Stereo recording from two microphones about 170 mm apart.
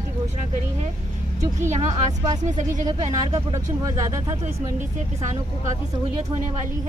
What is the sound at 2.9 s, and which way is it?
Speech, 20° right (ahead or behind).